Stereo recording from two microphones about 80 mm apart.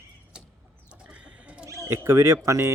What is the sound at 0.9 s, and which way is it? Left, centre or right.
Chicken, centre.